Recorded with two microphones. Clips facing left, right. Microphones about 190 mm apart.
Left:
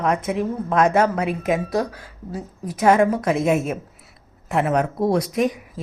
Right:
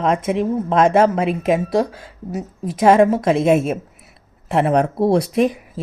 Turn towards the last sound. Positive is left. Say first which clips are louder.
# right 4 dB
turn(degrees=-30)  # may be behind; listen again after turning